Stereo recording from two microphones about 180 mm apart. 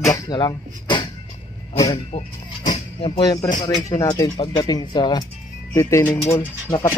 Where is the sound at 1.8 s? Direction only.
30° left (ahead or behind).